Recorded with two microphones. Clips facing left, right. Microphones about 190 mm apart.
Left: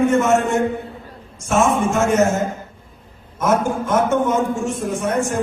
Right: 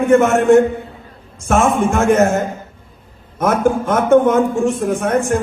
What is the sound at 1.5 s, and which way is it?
A man's voice, 55° right (ahead or behind).